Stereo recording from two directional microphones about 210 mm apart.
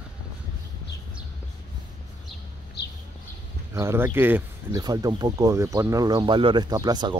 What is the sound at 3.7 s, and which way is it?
Speech, 10° right (ahead or behind).